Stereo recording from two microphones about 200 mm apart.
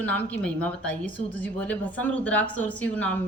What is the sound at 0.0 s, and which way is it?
A woman's voice, 5° left (ahead or behind).